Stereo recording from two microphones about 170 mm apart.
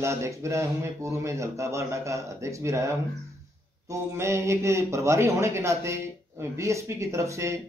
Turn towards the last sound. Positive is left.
turn(degrees=-15)  # may be behind; listen again after turning